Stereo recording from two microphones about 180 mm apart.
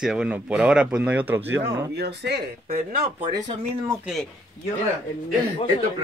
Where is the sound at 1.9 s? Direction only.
65° right (ahead or behind).